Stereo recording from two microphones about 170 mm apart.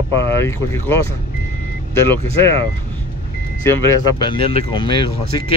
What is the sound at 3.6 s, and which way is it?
Speech, 20° left (ahead or behind).